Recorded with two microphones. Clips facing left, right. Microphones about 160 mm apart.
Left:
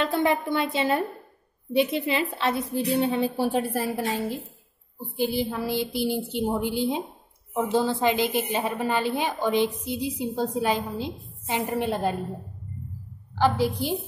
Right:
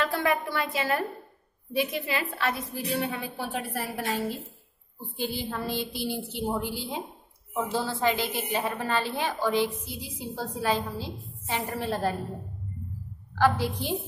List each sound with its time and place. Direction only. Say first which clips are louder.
0.0 s a woman's voice: left 3 dB; 25° left (ahead or behind)
5.2 s a woman's voice: left 6 dB; 15° left (ahead or behind)
13.4 s a woman's voice: left 2 dB; 15° left (ahead or behind)